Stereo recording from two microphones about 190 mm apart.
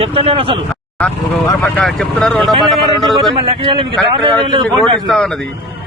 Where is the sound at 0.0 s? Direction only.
30° right (ahead or behind).